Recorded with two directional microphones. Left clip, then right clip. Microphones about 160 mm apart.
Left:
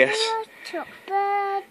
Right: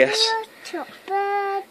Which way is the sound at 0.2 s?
30° left (ahead or behind).